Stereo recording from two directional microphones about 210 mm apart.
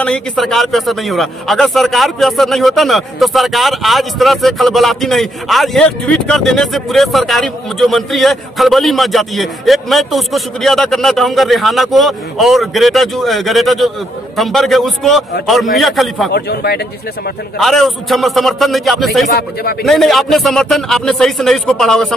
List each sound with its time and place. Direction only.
0.0 s a man's voice: 5° left (ahead or behind)
16.3 s a man's voice: 50° left (ahead or behind)
17.6 s a man's voice: centre (ahead or behind)
19.2 s a man's voice: 45° left (ahead or behind)
19.8 s a man's voice: centre (ahead or behind)